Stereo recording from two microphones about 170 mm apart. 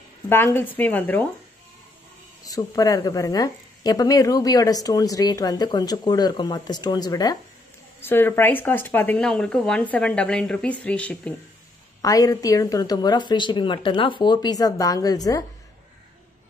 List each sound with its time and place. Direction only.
0.3 s speech: 15° left (ahead or behind)
2.4 s speech: 20° left (ahead or behind)
12.0 s speech: 20° left (ahead or behind)